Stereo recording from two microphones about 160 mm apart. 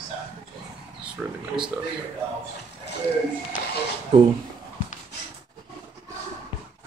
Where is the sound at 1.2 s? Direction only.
5° right (ahead or behind).